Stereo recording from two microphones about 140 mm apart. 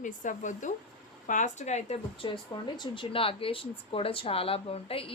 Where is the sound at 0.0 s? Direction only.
65° left (ahead or behind).